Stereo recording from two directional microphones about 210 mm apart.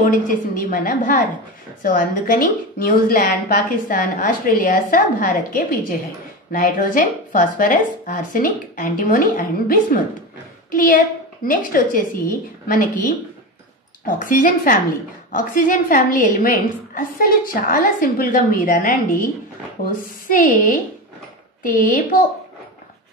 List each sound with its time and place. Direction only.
0.6 s a woman's voice: 40° left (ahead or behind)
20.2 s a woman's voice: 40° left (ahead or behind)